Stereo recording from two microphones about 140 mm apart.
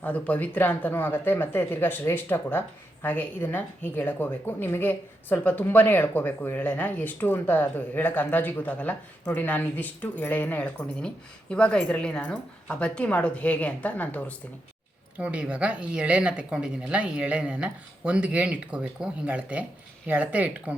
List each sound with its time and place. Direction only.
0.0 s speech: 10° left (ahead or behind)
15.2 s speech: 10° right (ahead or behind)